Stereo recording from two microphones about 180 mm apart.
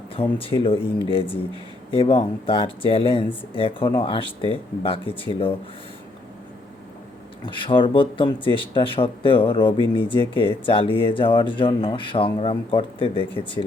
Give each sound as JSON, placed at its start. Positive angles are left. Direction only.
{"t": 0.1, "sound": "speech", "side_deg": 30}
{"t": 7.4, "sound": "speech", "side_deg": 25}